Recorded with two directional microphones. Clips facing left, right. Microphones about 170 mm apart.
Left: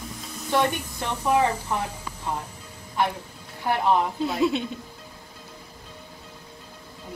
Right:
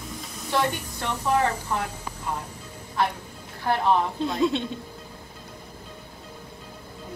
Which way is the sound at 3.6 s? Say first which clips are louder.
Even; 15° left (ahead or behind).